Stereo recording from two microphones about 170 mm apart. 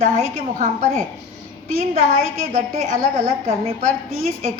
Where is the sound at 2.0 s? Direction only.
50° right (ahead or behind).